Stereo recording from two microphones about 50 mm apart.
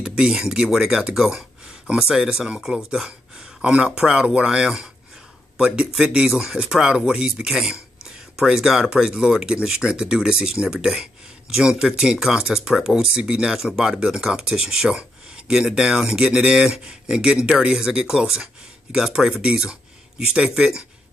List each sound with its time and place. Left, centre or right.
0.0 s speech: centre